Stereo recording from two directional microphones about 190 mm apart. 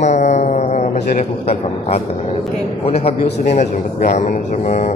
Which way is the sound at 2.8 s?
35° left (ahead or behind).